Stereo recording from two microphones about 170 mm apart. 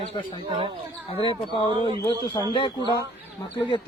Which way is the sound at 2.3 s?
25° left (ahead or behind).